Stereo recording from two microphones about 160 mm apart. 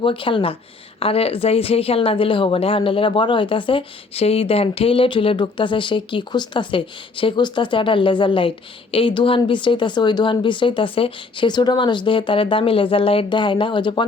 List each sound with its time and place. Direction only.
0.0 s a woman's voice: 30° left (ahead or behind)